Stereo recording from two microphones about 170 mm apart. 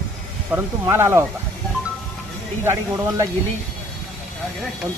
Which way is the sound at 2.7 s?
15° right (ahead or behind).